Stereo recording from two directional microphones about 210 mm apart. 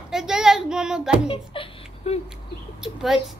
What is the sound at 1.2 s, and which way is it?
Speech, 25° left (ahead or behind).